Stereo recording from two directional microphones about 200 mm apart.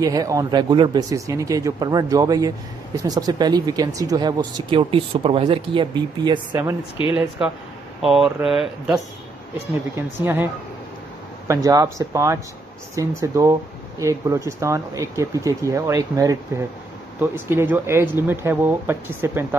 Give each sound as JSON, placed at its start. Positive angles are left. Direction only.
{"t": 0.0, "sound": "speech", "side_deg": -15}
{"t": 7.2, "sound": "speech", "side_deg": -5}